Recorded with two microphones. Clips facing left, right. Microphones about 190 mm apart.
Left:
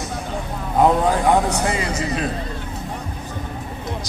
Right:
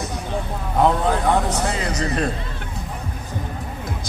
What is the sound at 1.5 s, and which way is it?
Speech, 10° left (ahead or behind).